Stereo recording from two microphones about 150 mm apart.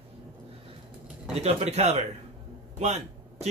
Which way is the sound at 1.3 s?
45° right (ahead or behind).